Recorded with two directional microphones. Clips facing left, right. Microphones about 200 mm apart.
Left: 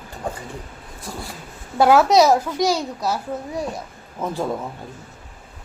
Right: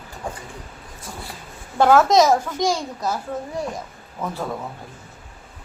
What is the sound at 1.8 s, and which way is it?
A child's voice, 10° left (ahead or behind).